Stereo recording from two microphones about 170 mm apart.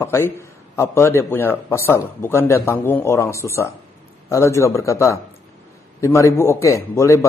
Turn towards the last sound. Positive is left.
turn(degrees=20)  # may be behind; listen again after turning